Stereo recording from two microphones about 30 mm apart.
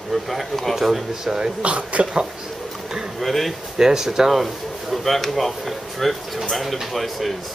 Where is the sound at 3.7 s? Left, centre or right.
Centre.